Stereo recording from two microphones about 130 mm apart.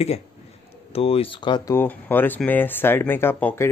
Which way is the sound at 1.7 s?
15° left (ahead or behind).